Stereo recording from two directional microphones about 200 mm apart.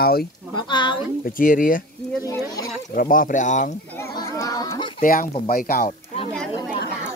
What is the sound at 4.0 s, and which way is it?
Children playing, 15° left (ahead or behind).